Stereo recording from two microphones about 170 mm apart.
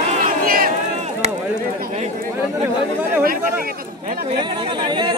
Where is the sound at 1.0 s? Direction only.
40° right (ahead or behind).